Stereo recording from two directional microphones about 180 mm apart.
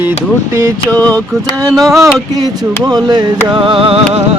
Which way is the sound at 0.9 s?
5° left (ahead or behind).